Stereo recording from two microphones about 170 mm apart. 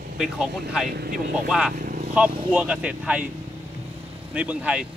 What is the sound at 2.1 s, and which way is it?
Speech, 5° right (ahead or behind).